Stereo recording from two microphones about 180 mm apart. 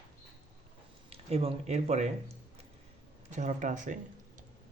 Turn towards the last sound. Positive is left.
turn(degrees=-45)  # may be behind; listen again after turning